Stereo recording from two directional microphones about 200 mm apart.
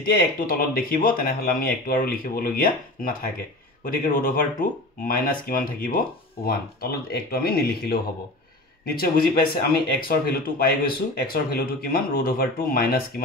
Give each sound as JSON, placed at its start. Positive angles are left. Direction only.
{"t": 0.2, "sound": "speech", "side_deg": 45}